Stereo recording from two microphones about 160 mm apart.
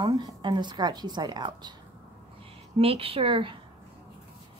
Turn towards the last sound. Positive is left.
turn(degrees=-35)  # may be behind; listen again after turning